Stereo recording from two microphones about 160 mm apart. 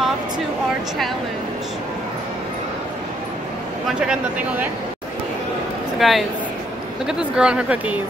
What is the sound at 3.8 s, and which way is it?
Speech, 5° right (ahead or behind).